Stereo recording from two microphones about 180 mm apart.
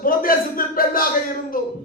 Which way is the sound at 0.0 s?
50° left (ahead or behind).